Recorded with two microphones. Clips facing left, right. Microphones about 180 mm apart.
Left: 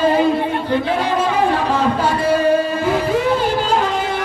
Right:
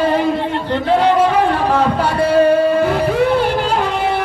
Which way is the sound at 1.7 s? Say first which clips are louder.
Right 2 dB; 60° right (ahead or behind).